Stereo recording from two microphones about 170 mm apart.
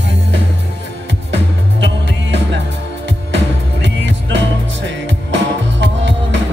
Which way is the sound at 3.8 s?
90° right.